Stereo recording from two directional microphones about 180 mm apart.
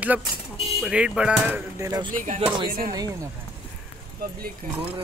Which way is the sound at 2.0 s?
45° right (ahead or behind).